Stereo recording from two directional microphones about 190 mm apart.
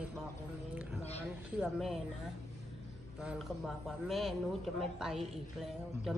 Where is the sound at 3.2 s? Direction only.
5° right (ahead or behind).